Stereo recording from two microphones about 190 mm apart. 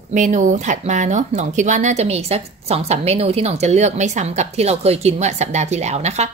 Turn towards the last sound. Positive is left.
turn(degrees=-35)  # may be behind; listen again after turning